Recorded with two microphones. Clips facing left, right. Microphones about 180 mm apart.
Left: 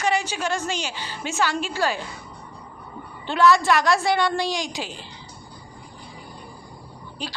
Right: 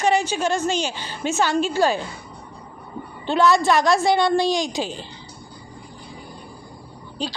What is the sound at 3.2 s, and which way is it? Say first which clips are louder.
A woman's voice: right 1 dB; 20° right (ahead or behind).